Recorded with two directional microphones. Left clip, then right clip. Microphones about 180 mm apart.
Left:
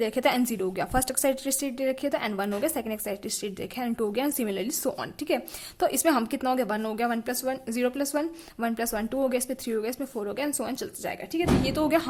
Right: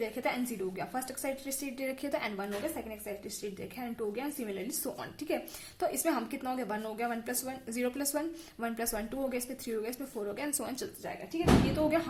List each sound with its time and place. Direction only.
0.0 s a woman's voice: 45° left (ahead or behind)
11.0 s a woman's voice: 45° left (ahead or behind)